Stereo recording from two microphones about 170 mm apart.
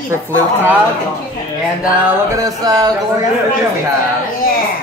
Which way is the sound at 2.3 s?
20° right (ahead or behind).